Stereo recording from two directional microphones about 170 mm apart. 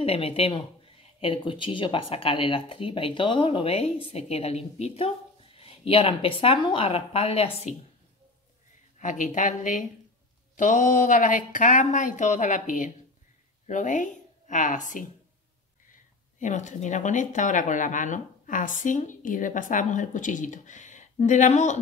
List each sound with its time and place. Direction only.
0.0 s speech: 35° left (ahead or behind)
8.9 s speech: 45° left (ahead or behind)
16.3 s speech: 45° left (ahead or behind)